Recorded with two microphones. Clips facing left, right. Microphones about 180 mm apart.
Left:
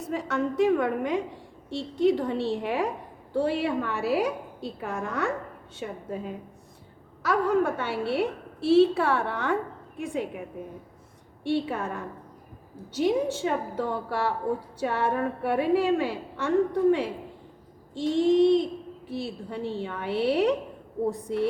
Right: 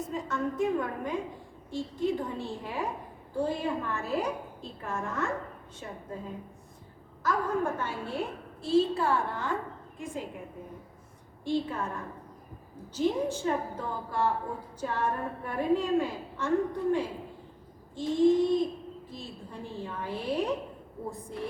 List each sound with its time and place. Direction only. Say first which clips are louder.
0.0 s a woman's voice: left 4 dB; 75° left (ahead or behind)
11.4 s a woman's voice: left 3 dB; 75° left (ahead or behind)
12.9 s a woman's voice: left 4 dB; 75° left (ahead or behind)